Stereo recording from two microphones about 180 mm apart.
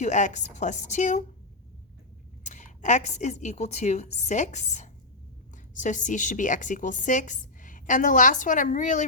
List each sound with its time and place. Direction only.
0.0 s a woman's voice: 40° left (ahead or behind)
2.4 s a woman's voice: 40° left (ahead or behind)